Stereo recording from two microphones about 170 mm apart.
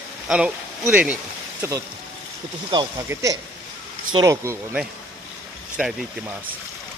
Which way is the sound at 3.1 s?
20° right (ahead or behind).